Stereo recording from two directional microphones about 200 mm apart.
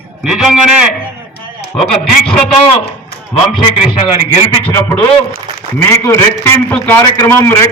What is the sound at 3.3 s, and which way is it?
Speech, 25° left (ahead or behind).